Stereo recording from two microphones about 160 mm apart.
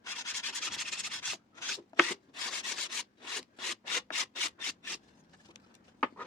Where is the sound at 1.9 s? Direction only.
25° left (ahead or behind).